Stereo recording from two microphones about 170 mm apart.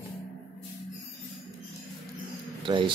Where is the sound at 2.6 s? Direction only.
30° right (ahead or behind).